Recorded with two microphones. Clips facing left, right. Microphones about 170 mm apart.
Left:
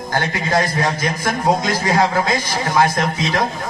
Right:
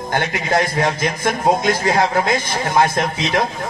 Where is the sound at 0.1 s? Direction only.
25° right (ahead or behind).